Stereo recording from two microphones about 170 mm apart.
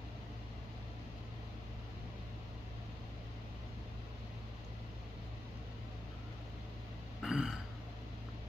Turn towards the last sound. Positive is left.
turn(degrees=-5)  # may be behind; listen again after turning